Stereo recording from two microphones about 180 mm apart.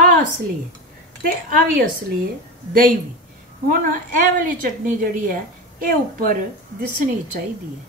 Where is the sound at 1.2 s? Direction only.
50° right (ahead or behind).